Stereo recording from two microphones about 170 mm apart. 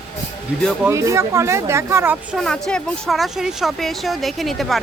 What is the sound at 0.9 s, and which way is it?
Speech, 20° right (ahead or behind).